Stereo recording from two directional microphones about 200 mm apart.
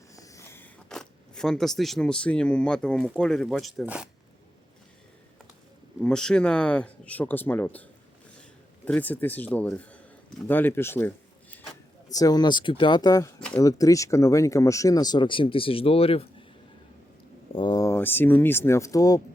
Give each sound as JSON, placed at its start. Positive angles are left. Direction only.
{"t": 0.1, "sound": "speech", "side_deg": 15}
{"t": 6.0, "sound": "a man's voice", "side_deg": 5}
{"t": 12.1, "sound": "speech", "side_deg": 20}
{"t": 17.5, "sound": "speech", "side_deg": 25}